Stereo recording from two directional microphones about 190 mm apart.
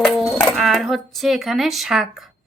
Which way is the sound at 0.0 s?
Centre (ahead or behind).